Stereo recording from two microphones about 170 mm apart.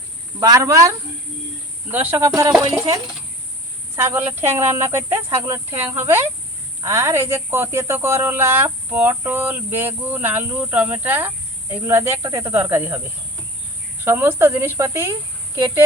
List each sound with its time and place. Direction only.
0.3 s speech: 20° right (ahead or behind)
14.0 s speech: 15° right (ahead or behind)